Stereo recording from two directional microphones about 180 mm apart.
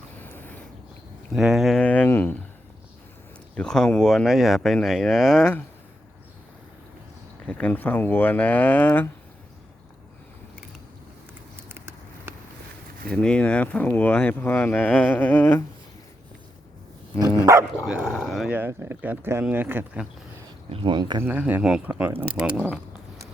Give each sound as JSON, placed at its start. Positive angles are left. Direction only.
{"t": 0.2, "sound": "a sound", "side_deg": 10}
{"t": 1.3, "sound": "speech", "side_deg": -5}
{"t": 3.5, "sound": "speech", "side_deg": 5}
{"t": 7.4, "sound": "speech", "side_deg": 10}
{"t": 11.7, "sound": "a sound", "side_deg": -15}
{"t": 13.1, "sound": "speech", "side_deg": 5}
{"t": 17.4, "sound": "speech", "side_deg": -15}
{"t": 17.7, "sound": "speech", "side_deg": 0}
{"t": 20.7, "sound": "speech", "side_deg": -25}
{"t": 21.2, "sound": "speech", "side_deg": -10}